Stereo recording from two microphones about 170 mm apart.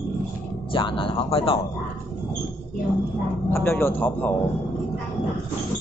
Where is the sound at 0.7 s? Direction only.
30° left (ahead or behind).